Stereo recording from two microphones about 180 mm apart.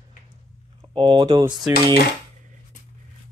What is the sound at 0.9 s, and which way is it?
Speech, 25° right (ahead or behind).